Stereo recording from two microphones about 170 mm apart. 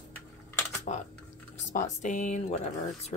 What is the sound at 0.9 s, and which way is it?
Speech, 45° left (ahead or behind).